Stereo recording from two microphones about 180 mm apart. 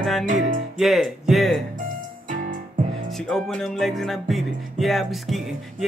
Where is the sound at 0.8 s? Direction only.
Centre (ahead or behind).